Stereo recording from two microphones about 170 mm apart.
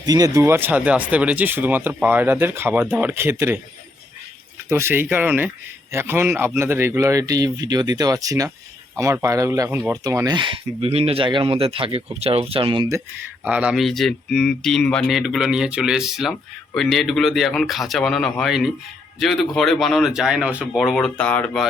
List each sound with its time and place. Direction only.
0.0 s speech: 20° right (ahead or behind)
4.7 s speech: 15° right (ahead or behind); by 12.9 s 30° right (ahead or behind)
13.4 s speech: 10° right (ahead or behind)